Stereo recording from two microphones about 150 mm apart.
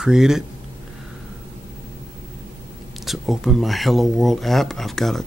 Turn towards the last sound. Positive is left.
turn(degrees=0)  # may be behind; listen again after turning